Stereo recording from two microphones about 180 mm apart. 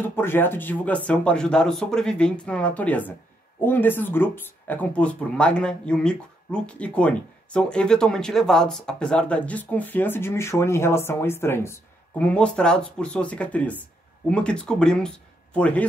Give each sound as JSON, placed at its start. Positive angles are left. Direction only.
{"t": 0.1, "sound": "speech", "side_deg": 10}